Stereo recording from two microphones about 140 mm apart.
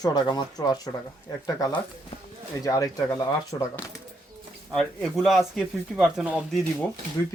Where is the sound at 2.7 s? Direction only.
25° left (ahead or behind).